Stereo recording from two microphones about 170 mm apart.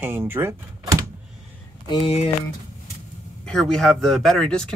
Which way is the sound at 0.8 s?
20° right (ahead or behind).